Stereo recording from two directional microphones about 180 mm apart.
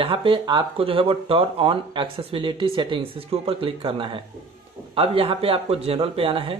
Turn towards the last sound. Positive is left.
turn(degrees=-30)  # may be behind; listen again after turning